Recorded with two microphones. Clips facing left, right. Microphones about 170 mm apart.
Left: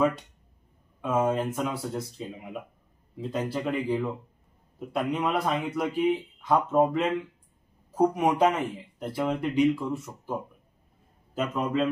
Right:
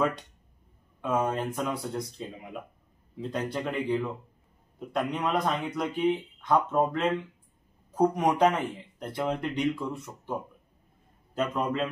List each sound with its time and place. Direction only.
1.0 s a man's voice: centre (ahead or behind)
11.3 s speech: centre (ahead or behind)